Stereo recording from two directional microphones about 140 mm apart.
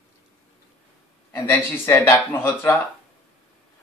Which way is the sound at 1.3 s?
20° left (ahead or behind).